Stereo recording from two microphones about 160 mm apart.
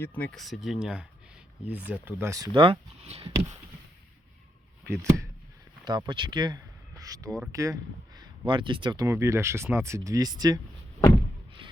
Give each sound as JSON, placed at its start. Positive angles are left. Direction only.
{"t": 0.0, "sound": "speech", "side_deg": 10}
{"t": 4.9, "sound": "speech", "side_deg": -20}
{"t": 6.1, "sound": "speech", "side_deg": -30}